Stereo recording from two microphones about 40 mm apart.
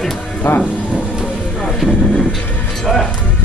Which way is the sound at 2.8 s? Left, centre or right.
Centre.